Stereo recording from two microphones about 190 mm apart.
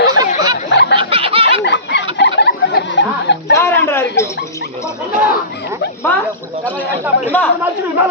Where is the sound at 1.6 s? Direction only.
65° left (ahead or behind).